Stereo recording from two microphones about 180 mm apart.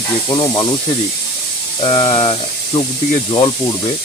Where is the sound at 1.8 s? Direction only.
30° left (ahead or behind).